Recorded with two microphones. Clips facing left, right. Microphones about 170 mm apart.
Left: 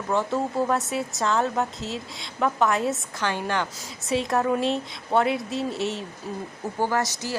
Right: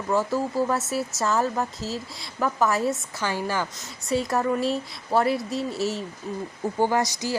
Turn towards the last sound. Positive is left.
turn(degrees=-15)  # may be behind; listen again after turning